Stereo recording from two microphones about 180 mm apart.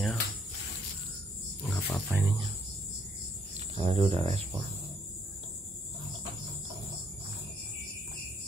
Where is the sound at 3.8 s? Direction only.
35° right (ahead or behind).